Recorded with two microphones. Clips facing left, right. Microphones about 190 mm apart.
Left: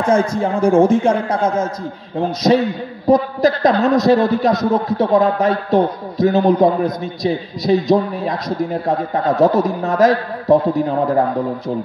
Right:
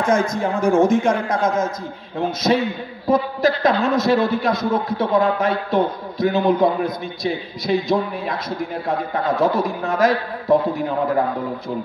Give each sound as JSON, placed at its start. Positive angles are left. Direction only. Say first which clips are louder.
{"t": 0.0, "sound": "a man's voice", "louder": "left 3 dB", "side_deg": 30}